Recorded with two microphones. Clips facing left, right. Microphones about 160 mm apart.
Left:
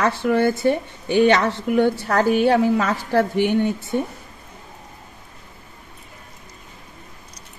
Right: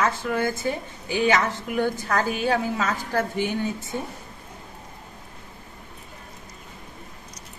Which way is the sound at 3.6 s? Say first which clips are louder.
Left 5 dB; 65° left (ahead or behind).